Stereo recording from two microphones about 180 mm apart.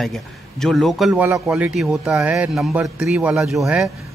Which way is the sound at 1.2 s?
10° right (ahead or behind).